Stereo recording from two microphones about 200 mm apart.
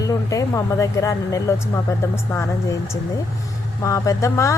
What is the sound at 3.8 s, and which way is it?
Speech, 15° left (ahead or behind).